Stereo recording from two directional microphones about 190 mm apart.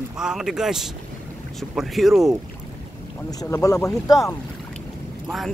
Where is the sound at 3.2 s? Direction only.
15° left (ahead or behind).